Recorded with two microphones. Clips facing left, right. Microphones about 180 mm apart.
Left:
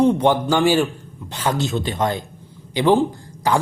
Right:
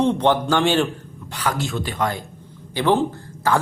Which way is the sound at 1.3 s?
25° left (ahead or behind).